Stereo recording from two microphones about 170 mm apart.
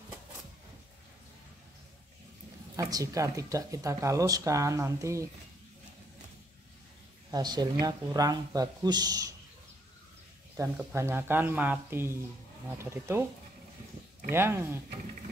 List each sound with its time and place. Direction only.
2.7 s speech: 20° right (ahead or behind)
7.2 s speech: 25° right (ahead or behind)
10.5 s speech: 15° right (ahead or behind)
14.3 s speech: 15° right (ahead or behind)